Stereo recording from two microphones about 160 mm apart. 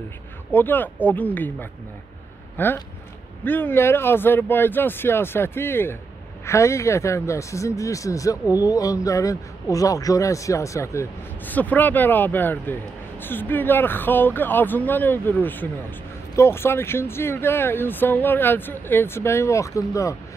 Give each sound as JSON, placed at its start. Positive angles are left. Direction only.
{"t": 0.5, "sound": "speech", "side_deg": 10}